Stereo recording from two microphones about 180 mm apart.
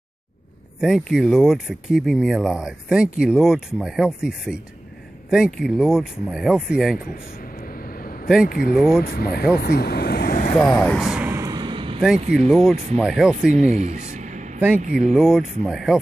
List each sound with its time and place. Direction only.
0.7 s speech: centre (ahead or behind)
7.8 s a sound: 55° left (ahead or behind)
8.5 s speech: 55° left (ahead or behind)
10.7 s speech: 10° left (ahead or behind)
11.0 s speech: 5° right (ahead or behind)
11.2 s a sound: 15° right (ahead or behind)
12.4 s speech: centre (ahead or behind)
13.5 s speech: 40° right (ahead or behind)
15.1 s speech: centre (ahead or behind)